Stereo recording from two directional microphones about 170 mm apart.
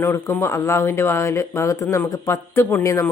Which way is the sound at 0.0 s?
15° left (ahead or behind).